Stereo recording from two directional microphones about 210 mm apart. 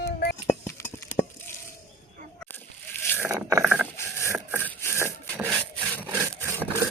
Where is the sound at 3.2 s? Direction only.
10° right (ahead or behind).